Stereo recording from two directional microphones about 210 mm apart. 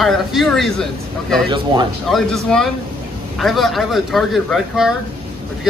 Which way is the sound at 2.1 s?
Centre (ahead or behind).